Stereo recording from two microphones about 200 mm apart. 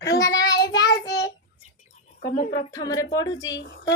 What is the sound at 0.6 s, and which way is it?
Child singing, 20° left (ahead or behind).